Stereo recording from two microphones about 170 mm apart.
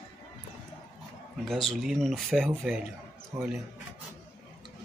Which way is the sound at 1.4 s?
Centre (ahead or behind).